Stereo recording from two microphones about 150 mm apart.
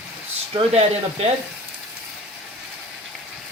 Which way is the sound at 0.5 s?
40° right (ahead or behind).